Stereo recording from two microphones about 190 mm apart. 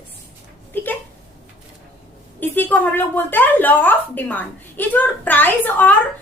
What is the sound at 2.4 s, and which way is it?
A woman's voice, 10° left (ahead or behind).